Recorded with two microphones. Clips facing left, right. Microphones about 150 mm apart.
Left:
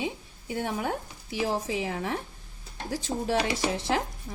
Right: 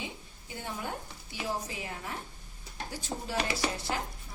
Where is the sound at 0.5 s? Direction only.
70° left (ahead or behind); by 2.1 s 90° left.